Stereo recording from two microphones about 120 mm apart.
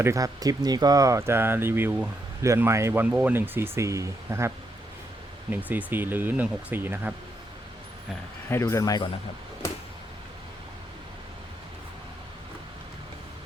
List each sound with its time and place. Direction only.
0.0 s speech: 30° right (ahead or behind)
8.4 s speech: 20° left (ahead or behind)